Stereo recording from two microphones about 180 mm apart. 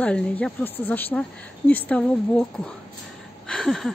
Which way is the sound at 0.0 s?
5° left (ahead or behind).